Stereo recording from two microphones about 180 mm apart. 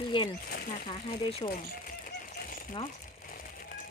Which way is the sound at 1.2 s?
25° left (ahead or behind).